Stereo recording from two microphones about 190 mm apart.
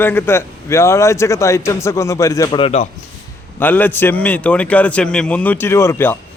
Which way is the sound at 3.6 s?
10° left (ahead or behind).